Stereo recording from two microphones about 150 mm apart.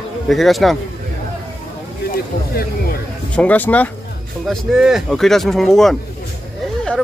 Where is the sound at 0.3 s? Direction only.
Centre (ahead or behind).